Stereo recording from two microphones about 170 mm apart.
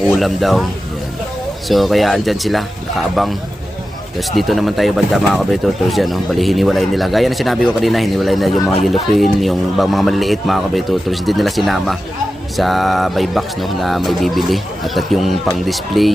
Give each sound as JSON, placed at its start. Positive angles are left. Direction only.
{"t": 0.0, "sound": "speech", "side_deg": 0}